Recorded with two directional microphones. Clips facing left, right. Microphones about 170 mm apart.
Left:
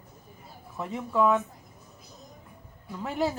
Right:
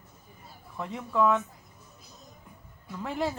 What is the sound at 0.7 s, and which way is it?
Speech, 5° left (ahead or behind).